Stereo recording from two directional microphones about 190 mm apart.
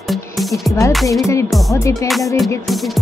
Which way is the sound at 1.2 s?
15° left (ahead or behind).